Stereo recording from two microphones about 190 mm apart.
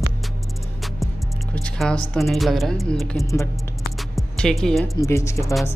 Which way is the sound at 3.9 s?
Centre (ahead or behind).